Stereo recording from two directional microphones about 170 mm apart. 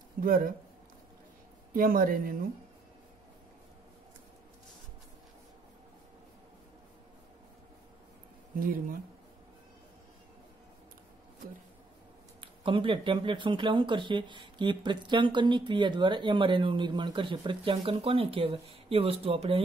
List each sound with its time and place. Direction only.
0.2 s speech: 55° right (ahead or behind)
1.7 s speech: 55° right (ahead or behind)
8.5 s speech: 55° right (ahead or behind)
12.4 s speech: 30° right (ahead or behind)